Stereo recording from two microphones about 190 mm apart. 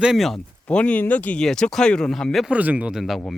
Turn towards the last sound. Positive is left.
turn(degrees=0)  # may be behind; listen again after turning